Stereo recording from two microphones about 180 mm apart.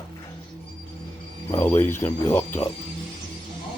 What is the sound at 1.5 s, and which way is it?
Speech, 10° left (ahead or behind).